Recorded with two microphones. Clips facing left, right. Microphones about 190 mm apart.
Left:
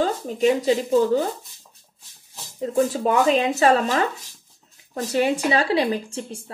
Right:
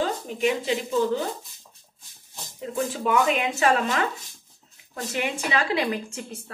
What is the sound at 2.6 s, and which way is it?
Speech, 40° left (ahead or behind).